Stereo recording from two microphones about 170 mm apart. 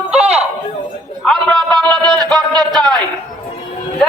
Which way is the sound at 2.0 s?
25° right (ahead or behind).